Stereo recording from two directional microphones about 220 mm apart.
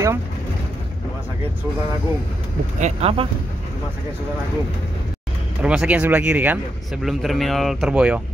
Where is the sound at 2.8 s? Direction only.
25° right (ahead or behind).